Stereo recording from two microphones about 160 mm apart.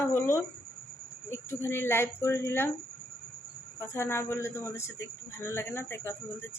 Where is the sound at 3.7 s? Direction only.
15° left (ahead or behind).